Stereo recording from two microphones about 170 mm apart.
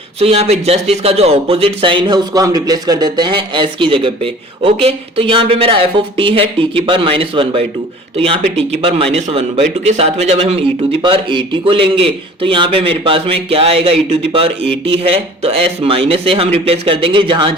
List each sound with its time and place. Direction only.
0.2 s speech: 35° right (ahead or behind)